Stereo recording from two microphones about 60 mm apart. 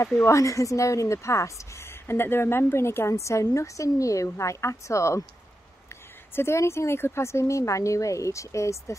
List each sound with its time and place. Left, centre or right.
0.2 s speech: left
1.9 s a woman's voice: left
6.3 s speech: left